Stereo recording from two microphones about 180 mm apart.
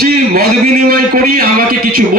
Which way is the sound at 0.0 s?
60° right (ahead or behind).